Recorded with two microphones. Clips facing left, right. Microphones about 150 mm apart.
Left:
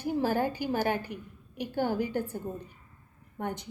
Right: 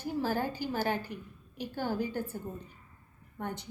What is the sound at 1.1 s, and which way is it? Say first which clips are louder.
Speech: left 2 dB; 55° left (ahead or behind).